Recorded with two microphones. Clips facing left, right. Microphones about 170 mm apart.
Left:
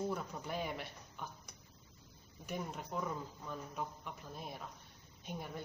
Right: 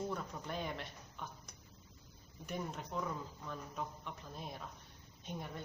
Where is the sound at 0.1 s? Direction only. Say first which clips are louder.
Left 1 dB; 5° left (ahead or behind).